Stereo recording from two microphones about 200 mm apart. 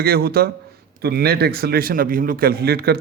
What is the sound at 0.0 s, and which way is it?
Speech, 50° right (ahead or behind).